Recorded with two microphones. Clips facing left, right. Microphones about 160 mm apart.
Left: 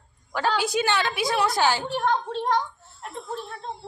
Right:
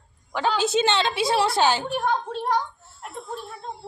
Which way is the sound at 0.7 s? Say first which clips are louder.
Right 2 dB; 25° right (ahead or behind).